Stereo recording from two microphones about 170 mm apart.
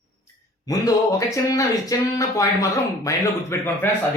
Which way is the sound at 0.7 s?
20° left (ahead or behind).